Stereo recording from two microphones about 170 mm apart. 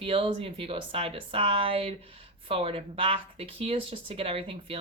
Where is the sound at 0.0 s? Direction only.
30° right (ahead or behind).